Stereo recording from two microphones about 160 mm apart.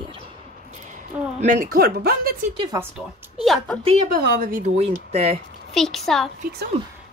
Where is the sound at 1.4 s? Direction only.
55° right (ahead or behind); by 2.3 s 70° right (ahead or behind).